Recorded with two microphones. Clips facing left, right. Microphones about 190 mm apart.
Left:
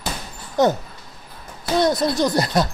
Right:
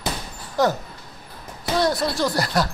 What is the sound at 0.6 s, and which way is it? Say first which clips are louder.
Speech: left 3 dB; 20° left (ahead or behind).